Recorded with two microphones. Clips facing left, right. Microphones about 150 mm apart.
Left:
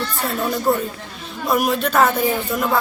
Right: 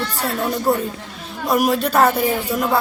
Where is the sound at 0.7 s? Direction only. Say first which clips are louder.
Even; 10° right (ahead or behind).